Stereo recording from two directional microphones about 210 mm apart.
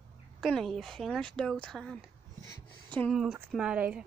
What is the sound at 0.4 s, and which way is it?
Speech, centre (ahead or behind).